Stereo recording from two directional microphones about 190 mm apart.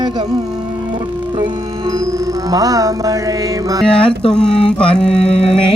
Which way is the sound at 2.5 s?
20° right (ahead or behind).